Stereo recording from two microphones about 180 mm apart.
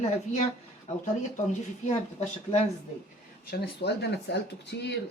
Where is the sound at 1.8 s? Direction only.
35° left (ahead or behind).